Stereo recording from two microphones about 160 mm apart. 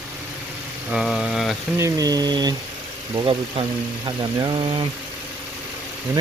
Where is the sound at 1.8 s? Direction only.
20° right (ahead or behind).